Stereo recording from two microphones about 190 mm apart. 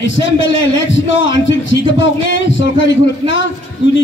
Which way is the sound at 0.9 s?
75° left (ahead or behind).